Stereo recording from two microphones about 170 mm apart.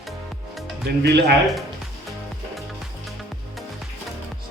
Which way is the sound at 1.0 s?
70° right (ahead or behind).